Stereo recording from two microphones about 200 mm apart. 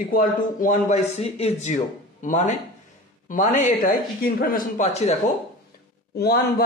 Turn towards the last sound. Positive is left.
turn(degrees=55)  # may be behind; listen again after turning